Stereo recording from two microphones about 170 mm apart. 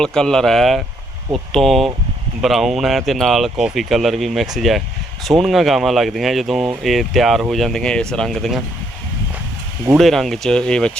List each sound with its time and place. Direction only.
0.0 s speech: 5° left (ahead or behind)
10.0 s speech: centre (ahead or behind)